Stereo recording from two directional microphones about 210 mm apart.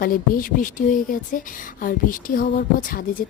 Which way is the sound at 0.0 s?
40° left (ahead or behind).